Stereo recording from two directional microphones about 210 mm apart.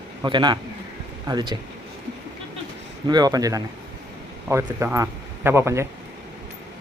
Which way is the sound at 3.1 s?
20° right (ahead or behind).